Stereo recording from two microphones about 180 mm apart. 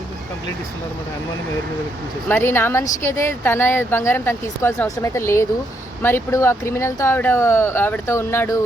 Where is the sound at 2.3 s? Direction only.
10° left (ahead or behind).